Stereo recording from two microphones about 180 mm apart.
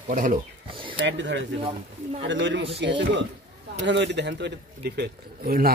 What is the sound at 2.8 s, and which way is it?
A man's voice, 75° right (ahead or behind).